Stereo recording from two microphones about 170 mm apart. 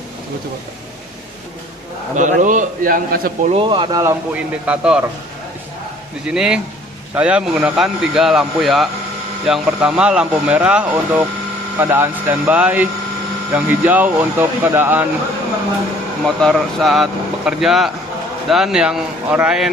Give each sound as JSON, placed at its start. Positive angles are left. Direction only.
{"t": 2.1, "sound": "a man's voice", "side_deg": -50}
{"t": 3.5, "sound": "speech", "side_deg": -30}
{"t": 4.6, "sound": "speech", "side_deg": -5}
{"t": 6.2, "sound": "speech", "side_deg": -5}
{"t": 16.2, "sound": "speech", "side_deg": 0}